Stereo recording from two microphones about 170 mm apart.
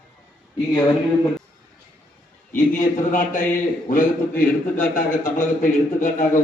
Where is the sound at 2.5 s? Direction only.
50° left (ahead or behind).